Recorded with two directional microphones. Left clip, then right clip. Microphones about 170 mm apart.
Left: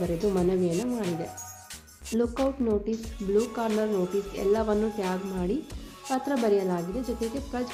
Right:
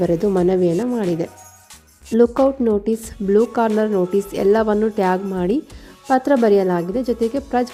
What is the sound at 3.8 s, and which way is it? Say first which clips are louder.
A woman's voice: right 9 dB; 45° right (ahead or behind).